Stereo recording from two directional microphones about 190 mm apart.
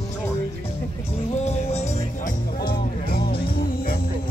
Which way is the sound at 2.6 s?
50° left (ahead or behind).